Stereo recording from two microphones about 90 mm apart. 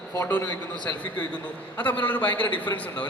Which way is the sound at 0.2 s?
15° left (ahead or behind).